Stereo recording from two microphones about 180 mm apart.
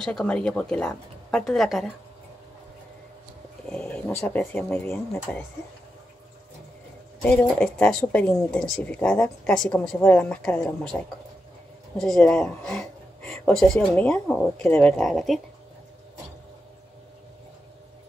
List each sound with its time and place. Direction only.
0.0 s speech: 5° left (ahead or behind)
3.6 s speech: 5° left (ahead or behind)
7.2 s speech: 5° left (ahead or behind)
12.0 s speech: 5° left (ahead or behind)